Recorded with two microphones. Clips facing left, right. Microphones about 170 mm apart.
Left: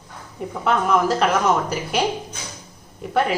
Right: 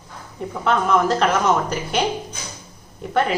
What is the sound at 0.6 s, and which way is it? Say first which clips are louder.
A woman's voice: right 1 dB; 5° left (ahead or behind).